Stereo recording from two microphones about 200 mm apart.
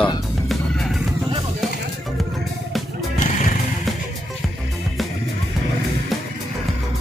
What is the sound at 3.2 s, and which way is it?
Music, 40° left (ahead or behind).